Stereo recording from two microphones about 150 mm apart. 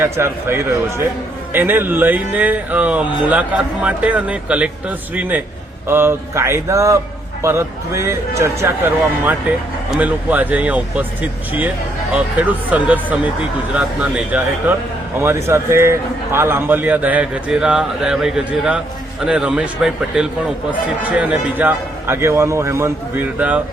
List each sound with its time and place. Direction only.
0.0 s a man's voice: 15° right (ahead or behind)